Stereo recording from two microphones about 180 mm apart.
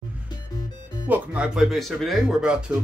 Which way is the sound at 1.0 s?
10° right (ahead or behind).